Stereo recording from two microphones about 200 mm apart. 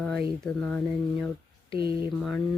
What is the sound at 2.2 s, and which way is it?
Speech, 5° left (ahead or behind).